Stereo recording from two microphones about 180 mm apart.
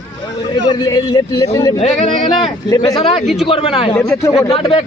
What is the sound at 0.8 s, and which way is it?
Speech, 25° left (ahead or behind).